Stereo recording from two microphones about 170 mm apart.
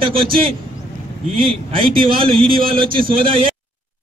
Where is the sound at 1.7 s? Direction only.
35° right (ahead or behind).